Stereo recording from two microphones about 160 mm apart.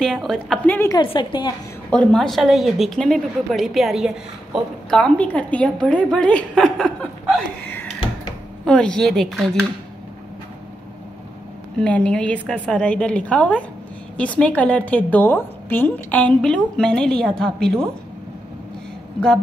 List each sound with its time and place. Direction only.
0.0 s a woman's voice: centre (ahead or behind)
0.7 s a woman's voice: 20° left (ahead or behind)
1.0 s a woman's voice: 30° left (ahead or behind)
1.9 s a woman's voice: 5° left (ahead or behind)
7.6 s a sound: 10° left (ahead or behind)
8.6 s a woman's voice: 5° left (ahead or behind)
11.8 s a woman's voice: 5° left (ahead or behind)